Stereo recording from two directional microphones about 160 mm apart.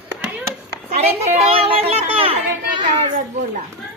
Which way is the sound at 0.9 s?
40° right (ahead or behind).